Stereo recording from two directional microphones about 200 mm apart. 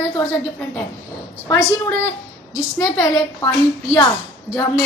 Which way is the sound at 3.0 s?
15° left (ahead or behind).